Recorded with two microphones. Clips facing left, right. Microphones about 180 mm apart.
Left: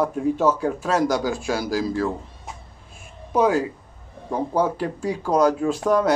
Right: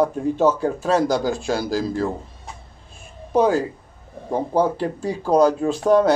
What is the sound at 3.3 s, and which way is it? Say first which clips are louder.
A man's voice: right 2 dB; 35° right (ahead or behind).